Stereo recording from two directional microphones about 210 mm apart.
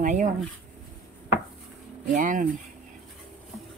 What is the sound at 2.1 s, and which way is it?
Speech, 40° right (ahead or behind).